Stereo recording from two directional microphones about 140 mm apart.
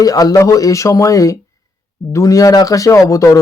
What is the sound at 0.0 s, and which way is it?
Speech, 25° left (ahead or behind).